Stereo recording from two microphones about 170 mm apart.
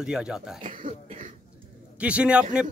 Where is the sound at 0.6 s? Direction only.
50° right (ahead or behind).